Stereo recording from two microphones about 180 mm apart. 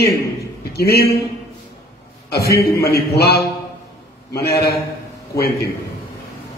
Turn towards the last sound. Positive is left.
turn(degrees=60)  # may be behind; listen again after turning